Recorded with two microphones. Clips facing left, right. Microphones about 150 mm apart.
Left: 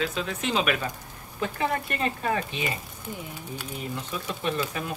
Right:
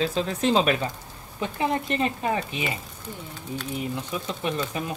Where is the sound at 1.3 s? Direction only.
25° right (ahead or behind).